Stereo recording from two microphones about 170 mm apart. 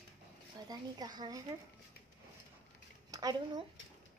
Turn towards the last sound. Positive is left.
turn(degrees=-25)  # may be behind; listen again after turning